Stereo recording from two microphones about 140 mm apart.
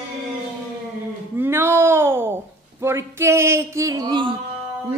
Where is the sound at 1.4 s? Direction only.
15° right (ahead or behind); by 4.4 s 35° right (ahead or behind).